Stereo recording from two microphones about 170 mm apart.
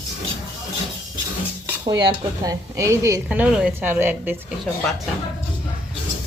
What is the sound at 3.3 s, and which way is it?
A woman's voice, 5° right (ahead or behind).